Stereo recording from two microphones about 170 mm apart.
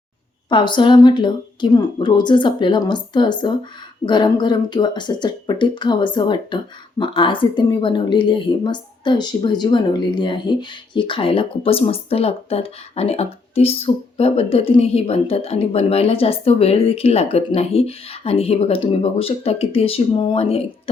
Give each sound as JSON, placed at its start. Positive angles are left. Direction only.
{"t": 0.5, "sound": "a woman's voice", "side_deg": 25}